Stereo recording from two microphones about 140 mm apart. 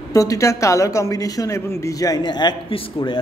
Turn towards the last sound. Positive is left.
turn(degrees=35)  # may be behind; listen again after turning